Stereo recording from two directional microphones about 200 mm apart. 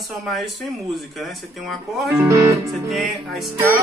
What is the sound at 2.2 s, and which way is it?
Music, 15° right (ahead or behind).